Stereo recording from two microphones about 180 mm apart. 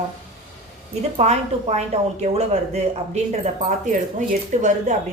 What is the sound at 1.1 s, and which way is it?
A woman's voice, 35° right (ahead or behind).